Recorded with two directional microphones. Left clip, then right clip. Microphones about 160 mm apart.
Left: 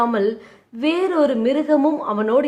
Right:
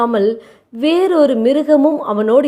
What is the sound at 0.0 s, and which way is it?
A woman's voice, 30° right (ahead or behind).